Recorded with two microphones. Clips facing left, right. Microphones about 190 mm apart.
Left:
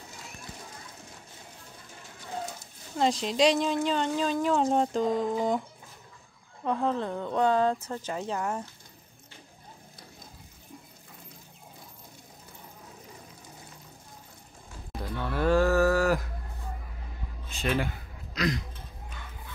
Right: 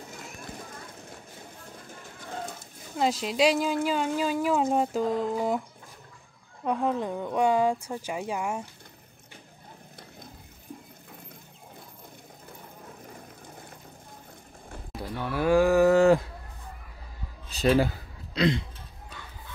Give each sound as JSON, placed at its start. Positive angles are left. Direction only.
{"t": 3.0, "sound": "speech", "side_deg": -5}
{"t": 6.6, "sound": "speech", "side_deg": -15}
{"t": 14.9, "sound": "speech", "side_deg": -10}
{"t": 17.5, "sound": "a sound", "side_deg": -35}